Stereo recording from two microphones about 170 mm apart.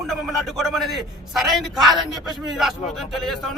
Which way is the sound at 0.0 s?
Centre (ahead or behind).